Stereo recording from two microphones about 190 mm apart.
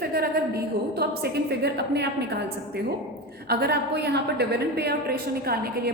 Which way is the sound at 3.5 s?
55° right (ahead or behind).